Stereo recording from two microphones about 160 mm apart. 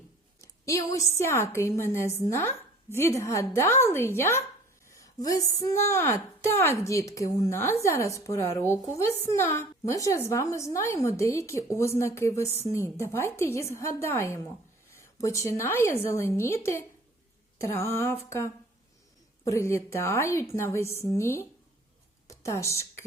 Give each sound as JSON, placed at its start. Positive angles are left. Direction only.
{"t": 0.4, "sound": "a woman's voice", "side_deg": 20}